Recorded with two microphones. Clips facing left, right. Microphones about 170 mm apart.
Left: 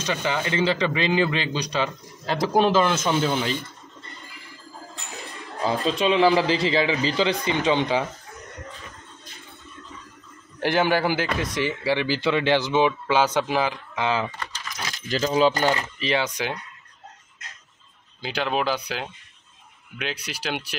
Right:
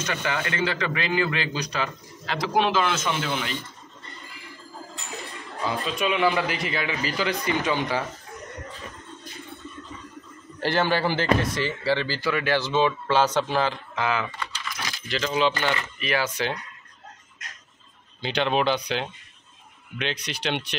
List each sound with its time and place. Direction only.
0.0 s a man's voice: 15° left (ahead or behind)
2.2 s speech: 40° left (ahead or behind)
5.7 s a man's voice: 30° left (ahead or behind)
10.6 s speech: 15° left (ahead or behind)
14.0 s a man's voice: 30° left (ahead or behind)
15.0 s speech: 40° left (ahead or behind)
18.2 s speech: 5° left (ahead or behind)